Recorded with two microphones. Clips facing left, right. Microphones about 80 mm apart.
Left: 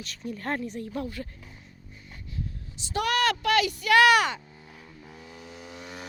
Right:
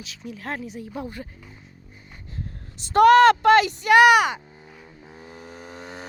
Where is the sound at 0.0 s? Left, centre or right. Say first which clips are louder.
Left 1 dB; centre.